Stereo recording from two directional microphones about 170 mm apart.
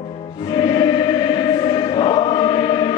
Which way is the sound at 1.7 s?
30° left (ahead or behind).